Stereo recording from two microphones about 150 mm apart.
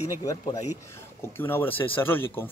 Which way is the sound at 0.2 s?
25° left (ahead or behind).